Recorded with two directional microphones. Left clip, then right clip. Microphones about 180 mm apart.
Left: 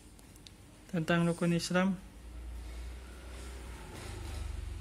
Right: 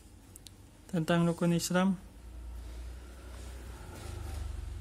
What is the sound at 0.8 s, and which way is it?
Speech, 25° right (ahead or behind).